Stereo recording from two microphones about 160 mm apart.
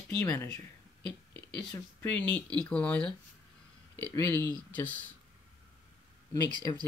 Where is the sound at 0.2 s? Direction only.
20° left (ahead or behind).